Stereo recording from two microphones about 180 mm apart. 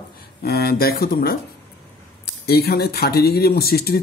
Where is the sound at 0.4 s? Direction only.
60° left (ahead or behind).